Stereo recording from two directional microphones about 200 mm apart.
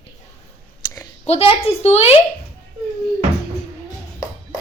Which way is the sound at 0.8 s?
20° left (ahead or behind).